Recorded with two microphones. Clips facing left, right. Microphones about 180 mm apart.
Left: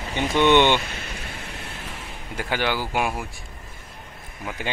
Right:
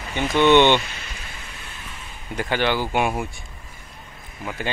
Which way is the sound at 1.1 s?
65° left (ahead or behind).